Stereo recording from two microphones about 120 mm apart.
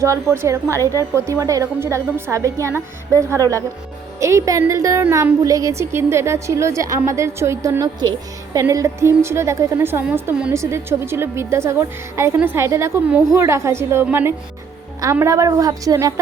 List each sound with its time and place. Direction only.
0.0 s a woman's voice: 25° right (ahead or behind)